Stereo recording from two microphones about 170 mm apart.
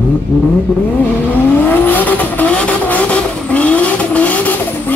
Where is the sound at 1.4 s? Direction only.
10° left (ahead or behind).